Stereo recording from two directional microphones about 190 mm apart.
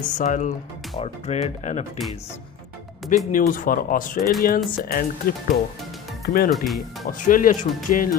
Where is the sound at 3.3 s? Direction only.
45° left (ahead or behind).